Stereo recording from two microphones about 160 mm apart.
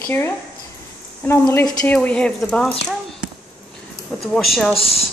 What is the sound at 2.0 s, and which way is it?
Speech, 5° left (ahead or behind).